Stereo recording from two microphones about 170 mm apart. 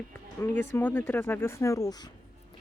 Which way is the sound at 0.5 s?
15° left (ahead or behind).